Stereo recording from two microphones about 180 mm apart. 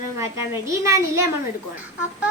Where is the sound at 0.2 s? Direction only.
15° right (ahead or behind).